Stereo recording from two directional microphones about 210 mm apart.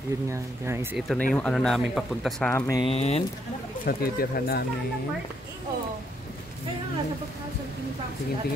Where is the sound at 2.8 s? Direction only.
30° left (ahead or behind).